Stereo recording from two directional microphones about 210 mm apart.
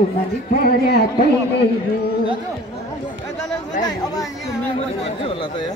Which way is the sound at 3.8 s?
20° left (ahead or behind).